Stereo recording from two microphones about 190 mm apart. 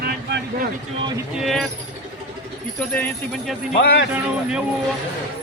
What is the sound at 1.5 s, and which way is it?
Speech, centre (ahead or behind).